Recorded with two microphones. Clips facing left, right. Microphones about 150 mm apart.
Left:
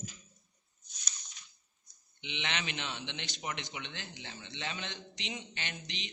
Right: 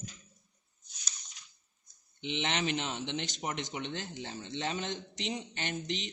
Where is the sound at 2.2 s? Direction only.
40° right (ahead or behind).